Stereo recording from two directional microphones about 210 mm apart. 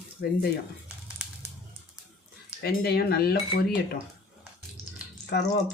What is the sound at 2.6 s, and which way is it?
Speech, 50° left (ahead or behind).